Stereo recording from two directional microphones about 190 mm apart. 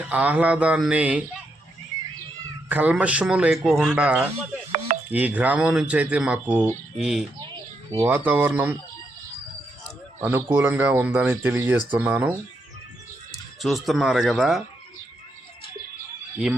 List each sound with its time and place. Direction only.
0.0 s speech: 10° right (ahead or behind)
2.6 s speech: 10° right (ahead or behind)
7.4 s a sound: 25° right (ahead or behind)
8.0 s speech: 10° right (ahead or behind)
10.2 s speech: 10° right (ahead or behind)
13.6 s speech: centre (ahead or behind)